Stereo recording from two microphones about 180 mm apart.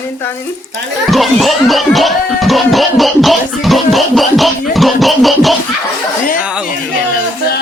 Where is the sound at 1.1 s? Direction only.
Centre (ahead or behind).